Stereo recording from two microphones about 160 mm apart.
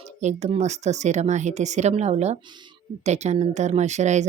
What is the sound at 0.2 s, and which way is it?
Speech, 45° right (ahead or behind).